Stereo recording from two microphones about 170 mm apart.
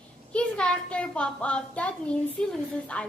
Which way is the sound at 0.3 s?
5° left (ahead or behind).